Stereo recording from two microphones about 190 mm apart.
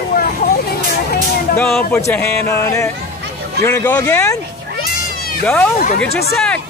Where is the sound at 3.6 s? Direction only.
20° left (ahead or behind).